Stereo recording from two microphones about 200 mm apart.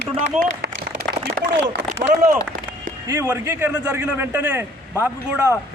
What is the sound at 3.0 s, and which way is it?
A man's voice, 15° right (ahead or behind).